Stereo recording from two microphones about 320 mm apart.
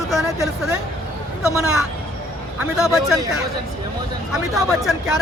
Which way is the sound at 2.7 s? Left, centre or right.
Centre.